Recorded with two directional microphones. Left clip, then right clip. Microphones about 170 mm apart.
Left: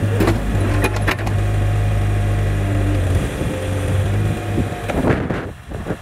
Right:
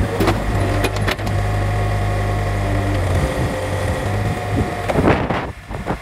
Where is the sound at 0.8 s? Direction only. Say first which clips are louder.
Even; centre (ahead or behind).